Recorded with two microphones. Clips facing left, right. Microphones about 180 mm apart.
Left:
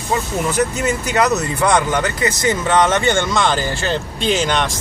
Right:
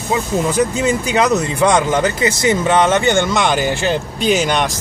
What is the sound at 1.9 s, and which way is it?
Speech, 25° right (ahead or behind).